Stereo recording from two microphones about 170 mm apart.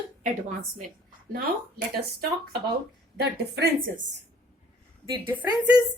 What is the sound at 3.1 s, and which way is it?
Speech, 75° right (ahead or behind).